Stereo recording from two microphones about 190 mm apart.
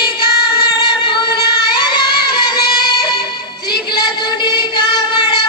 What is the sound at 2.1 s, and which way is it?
Music, 55° left (ahead or behind).